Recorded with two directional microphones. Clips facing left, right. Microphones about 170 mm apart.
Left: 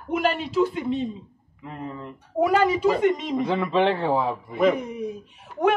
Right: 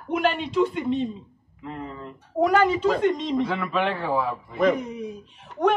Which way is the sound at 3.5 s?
25° left (ahead or behind).